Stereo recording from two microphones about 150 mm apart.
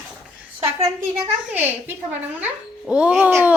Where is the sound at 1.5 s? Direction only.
15° right (ahead or behind).